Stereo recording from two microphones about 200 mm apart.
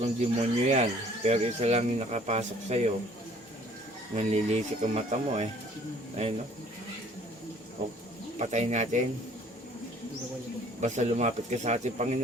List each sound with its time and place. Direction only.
0.0 s speech: 35° right (ahead or behind)
4.1 s speech: 35° right (ahead or behind)
8.4 s speech: 35° right (ahead or behind)
10.8 s speech: 35° right (ahead or behind)